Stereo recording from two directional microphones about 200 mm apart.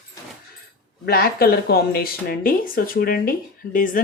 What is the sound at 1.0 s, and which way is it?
Speech, 50° left (ahead or behind).